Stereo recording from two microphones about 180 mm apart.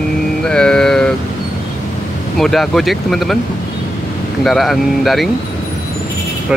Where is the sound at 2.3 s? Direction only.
Centre (ahead or behind).